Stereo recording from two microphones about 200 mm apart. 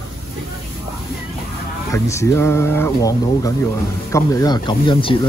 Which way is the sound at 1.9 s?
15° left (ahead or behind).